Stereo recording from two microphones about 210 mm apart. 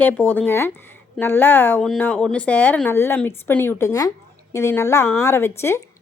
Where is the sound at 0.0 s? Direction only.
10° left (ahead or behind).